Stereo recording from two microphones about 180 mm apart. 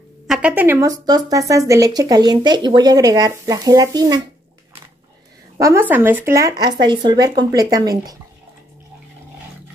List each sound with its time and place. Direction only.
0.3 s a woman's voice: 5° right (ahead or behind)
5.6 s speech: 15° right (ahead or behind)